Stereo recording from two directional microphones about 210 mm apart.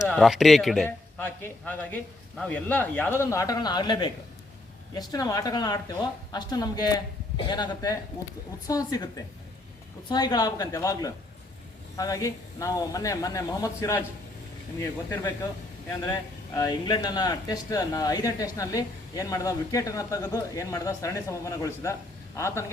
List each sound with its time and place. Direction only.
0.1 s a woman's voice: centre (ahead or behind)